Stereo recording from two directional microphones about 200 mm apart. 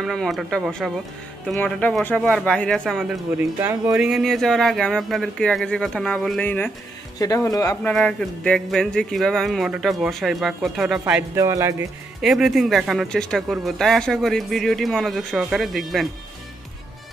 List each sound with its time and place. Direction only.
0.0 s speech: centre (ahead or behind)
3.3 s speech: 10° right (ahead or behind); by 7.7 s 15° left (ahead or behind)
7.7 s speech: 5° left (ahead or behind)
11.3 s speech: 15° right (ahead or behind)
12.2 s speech: centre (ahead or behind)